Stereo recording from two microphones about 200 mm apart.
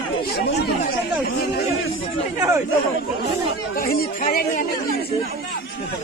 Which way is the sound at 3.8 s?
45° left (ahead or behind).